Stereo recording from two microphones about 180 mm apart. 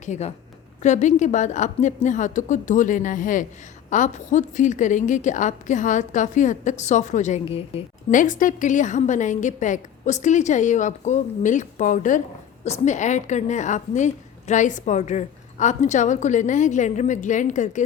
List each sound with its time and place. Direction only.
0.0 s a woman's voice: 40° left (ahead or behind)
8.1 s a woman's voice: 45° left (ahead or behind)